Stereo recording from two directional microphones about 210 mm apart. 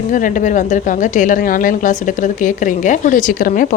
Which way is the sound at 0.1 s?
40° left (ahead or behind).